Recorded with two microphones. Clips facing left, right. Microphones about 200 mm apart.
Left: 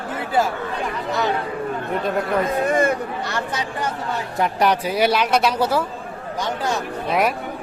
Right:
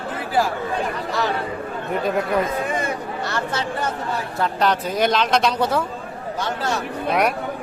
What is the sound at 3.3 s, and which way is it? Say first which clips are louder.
Speech: right 1 dB; 15° left (ahead or behind).